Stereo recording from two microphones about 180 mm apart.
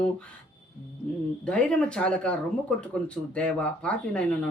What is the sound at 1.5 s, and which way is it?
Speech, 5° left (ahead or behind).